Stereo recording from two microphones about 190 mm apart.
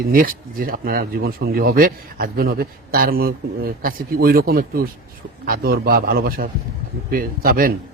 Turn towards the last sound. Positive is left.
turn(degrees=-50)  # may be behind; listen again after turning